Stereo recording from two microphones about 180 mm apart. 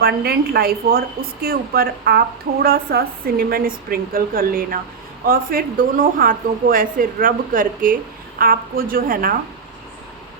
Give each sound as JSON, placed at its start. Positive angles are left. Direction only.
{"t": 0.0, "sound": "a woman's voice", "side_deg": -60}